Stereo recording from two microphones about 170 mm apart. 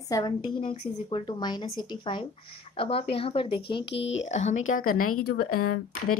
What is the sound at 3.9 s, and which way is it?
Speech, 90° left.